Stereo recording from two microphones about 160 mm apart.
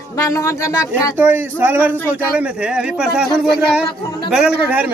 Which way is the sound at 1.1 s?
15° right (ahead or behind).